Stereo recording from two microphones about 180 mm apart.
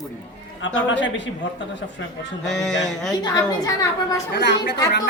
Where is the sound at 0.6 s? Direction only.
90° left.